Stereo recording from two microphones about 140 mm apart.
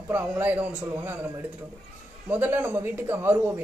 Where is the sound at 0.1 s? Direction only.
10° right (ahead or behind).